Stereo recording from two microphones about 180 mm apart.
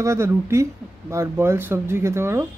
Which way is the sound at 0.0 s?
15° right (ahead or behind).